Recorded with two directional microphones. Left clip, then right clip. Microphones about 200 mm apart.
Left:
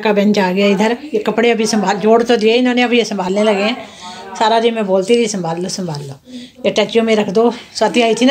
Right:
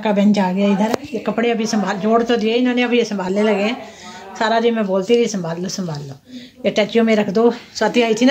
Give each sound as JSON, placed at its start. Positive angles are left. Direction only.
{"t": 0.0, "sound": "speech", "side_deg": -5}